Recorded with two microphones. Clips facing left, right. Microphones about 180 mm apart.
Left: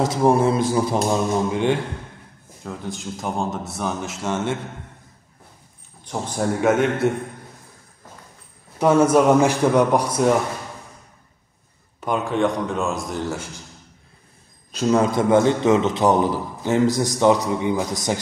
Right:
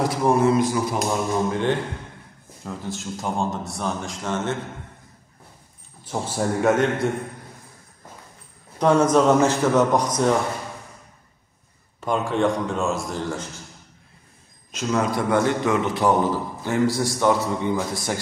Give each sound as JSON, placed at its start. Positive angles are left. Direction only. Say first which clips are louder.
{"t": 0.0, "sound": "a man's voice", "louder": "left 2 dB", "side_deg": 25}
{"t": 1.5, "sound": "a man's voice", "louder": "left 2 dB", "side_deg": 15}
{"t": 2.6, "sound": "speech", "louder": "left 1 dB", "side_deg": 0}
{"t": 6.0, "sound": "speech", "louder": "left 1 dB", "side_deg": -5}
{"t": 8.7, "sound": "a man's voice", "louder": "left 2 dB", "side_deg": 5}
{"t": 12.0, "sound": "speech", "louder": "left 1 dB", "side_deg": 0}
{"t": 14.7, "sound": "a man's voice", "louder": "left 5 dB", "side_deg": 35}